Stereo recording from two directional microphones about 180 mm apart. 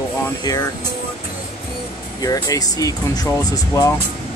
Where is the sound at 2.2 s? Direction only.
20° left (ahead or behind).